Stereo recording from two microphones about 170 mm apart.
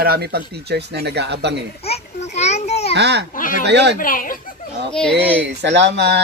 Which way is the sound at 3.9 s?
55° left (ahead or behind).